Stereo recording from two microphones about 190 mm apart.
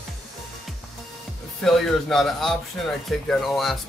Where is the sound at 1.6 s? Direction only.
Centre (ahead or behind).